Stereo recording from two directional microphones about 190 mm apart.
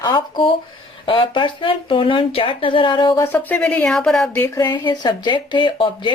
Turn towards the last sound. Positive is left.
turn(degrees=25)  # may be behind; listen again after turning